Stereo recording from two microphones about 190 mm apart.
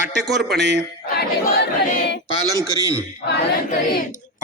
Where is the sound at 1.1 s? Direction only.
55° left (ahead or behind).